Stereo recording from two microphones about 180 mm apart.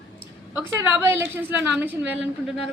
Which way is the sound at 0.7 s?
10° right (ahead or behind).